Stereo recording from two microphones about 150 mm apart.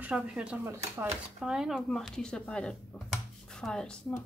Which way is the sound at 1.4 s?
5° right (ahead or behind).